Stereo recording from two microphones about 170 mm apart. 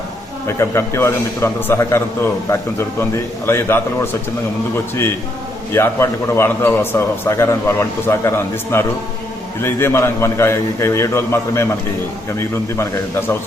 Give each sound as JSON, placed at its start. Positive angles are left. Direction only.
{"t": 0.4, "sound": "a man's voice", "side_deg": 15}
{"t": 5.7, "sound": "a man's voice", "side_deg": 15}
{"t": 12.7, "sound": "a man's voice", "side_deg": 15}